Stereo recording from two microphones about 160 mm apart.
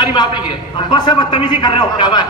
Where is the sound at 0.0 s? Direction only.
25° left (ahead or behind).